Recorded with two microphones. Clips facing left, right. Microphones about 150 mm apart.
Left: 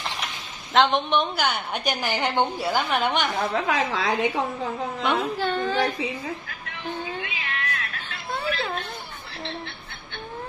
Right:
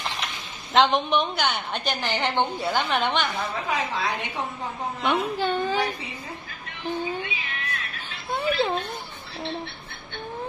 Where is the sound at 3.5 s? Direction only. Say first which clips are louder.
Left 3 dB; 90° left.